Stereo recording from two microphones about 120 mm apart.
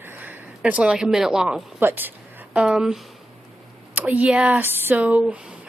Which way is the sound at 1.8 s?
20° right (ahead or behind).